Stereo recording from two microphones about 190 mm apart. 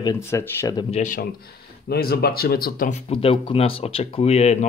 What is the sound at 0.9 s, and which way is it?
Speech, 45° left (ahead or behind).